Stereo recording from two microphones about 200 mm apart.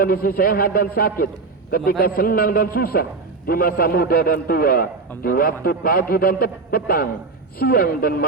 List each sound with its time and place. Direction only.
0.0 s a man's voice: 45° left (ahead or behind)